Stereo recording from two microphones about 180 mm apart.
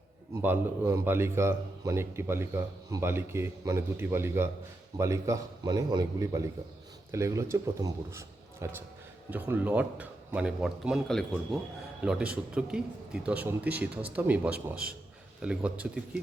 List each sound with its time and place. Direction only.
0.4 s a man's voice: 15° right (ahead or behind)